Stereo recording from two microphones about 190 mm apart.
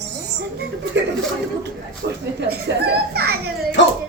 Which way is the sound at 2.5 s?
60° right (ahead or behind).